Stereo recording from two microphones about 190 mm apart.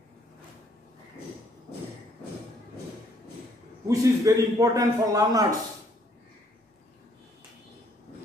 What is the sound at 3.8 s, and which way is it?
A man's voice, 15° right (ahead or behind).